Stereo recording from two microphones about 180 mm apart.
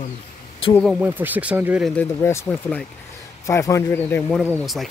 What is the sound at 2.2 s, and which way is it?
Speech, 15° left (ahead or behind).